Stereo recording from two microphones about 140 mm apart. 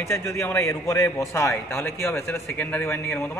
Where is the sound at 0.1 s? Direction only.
20° left (ahead or behind).